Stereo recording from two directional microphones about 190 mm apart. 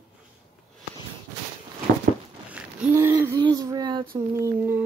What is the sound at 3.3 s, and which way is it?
Speech, 20° right (ahead or behind).